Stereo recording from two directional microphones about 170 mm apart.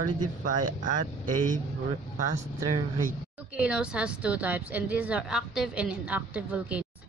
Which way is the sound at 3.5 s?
5° right (ahead or behind).